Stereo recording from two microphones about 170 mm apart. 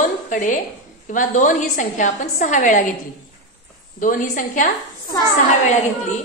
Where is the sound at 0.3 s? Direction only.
50° left (ahead or behind).